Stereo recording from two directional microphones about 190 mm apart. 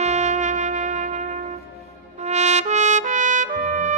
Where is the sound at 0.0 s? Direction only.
40° right (ahead or behind).